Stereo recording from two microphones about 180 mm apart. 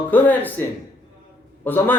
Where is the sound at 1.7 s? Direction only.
10° left (ahead or behind).